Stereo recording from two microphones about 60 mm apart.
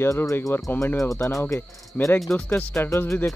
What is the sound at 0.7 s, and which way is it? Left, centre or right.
Speech, left.